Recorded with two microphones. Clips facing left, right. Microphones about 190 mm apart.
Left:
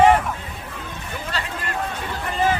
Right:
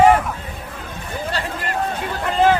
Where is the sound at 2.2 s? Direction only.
75° right (ahead or behind).